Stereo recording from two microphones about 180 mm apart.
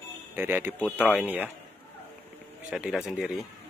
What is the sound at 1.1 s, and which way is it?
Speech, 10° right (ahead or behind).